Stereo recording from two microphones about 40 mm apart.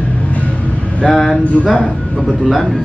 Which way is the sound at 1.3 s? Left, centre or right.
Left.